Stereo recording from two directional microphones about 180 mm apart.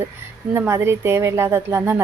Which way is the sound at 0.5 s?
15° right (ahead or behind).